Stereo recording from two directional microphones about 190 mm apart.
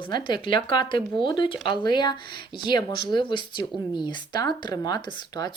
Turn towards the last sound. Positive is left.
turn(degrees=20)  # may be behind; listen again after turning